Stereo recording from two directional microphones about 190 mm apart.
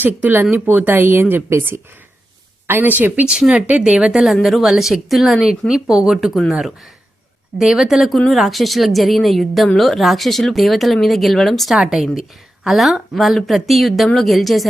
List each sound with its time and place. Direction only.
0.0 s speech: 10° right (ahead or behind)